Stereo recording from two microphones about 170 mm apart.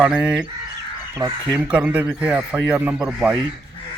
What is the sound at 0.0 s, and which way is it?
Speech, 5° right (ahead or behind).